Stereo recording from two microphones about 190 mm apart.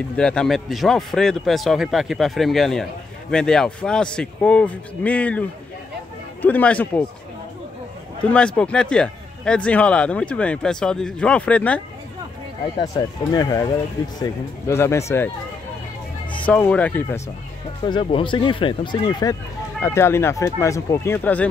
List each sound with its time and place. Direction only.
0.2 s a man's voice: 5° left (ahead or behind)
8.2 s a man's voice: 5° left (ahead or behind)
12.7 s speech: 20° left (ahead or behind)
16.4 s speech: 10° left (ahead or behind)
17.8 s speech: 25° left (ahead or behind); by 21.5 s 10° left (ahead or behind)